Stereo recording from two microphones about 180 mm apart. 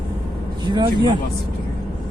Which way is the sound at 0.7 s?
25° right (ahead or behind).